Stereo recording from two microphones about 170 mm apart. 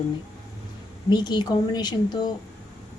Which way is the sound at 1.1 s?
25° left (ahead or behind).